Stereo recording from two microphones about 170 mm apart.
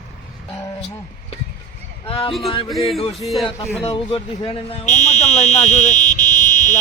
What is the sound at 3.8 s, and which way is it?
Speech, 30° left (ahead or behind).